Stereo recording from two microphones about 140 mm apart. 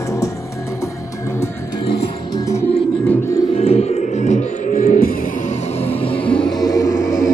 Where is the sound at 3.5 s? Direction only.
45° left (ahead or behind).